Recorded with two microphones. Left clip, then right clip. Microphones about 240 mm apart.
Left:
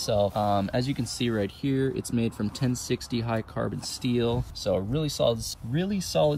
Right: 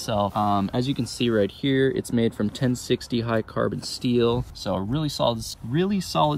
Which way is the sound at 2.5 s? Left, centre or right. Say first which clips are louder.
Right 5 dB; left.